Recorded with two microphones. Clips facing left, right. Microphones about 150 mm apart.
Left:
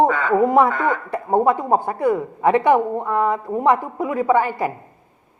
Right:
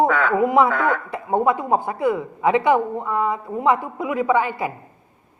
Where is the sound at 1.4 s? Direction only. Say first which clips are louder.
Left 2 dB; 35° left (ahead or behind).